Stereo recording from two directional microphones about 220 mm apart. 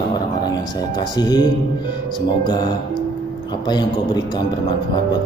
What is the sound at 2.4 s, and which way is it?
Speech, 20° left (ahead or behind).